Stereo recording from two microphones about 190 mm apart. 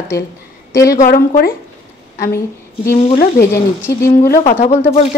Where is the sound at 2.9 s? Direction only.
35° left (ahead or behind).